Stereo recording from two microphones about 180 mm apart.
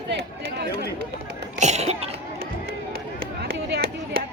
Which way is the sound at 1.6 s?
40° right (ahead or behind).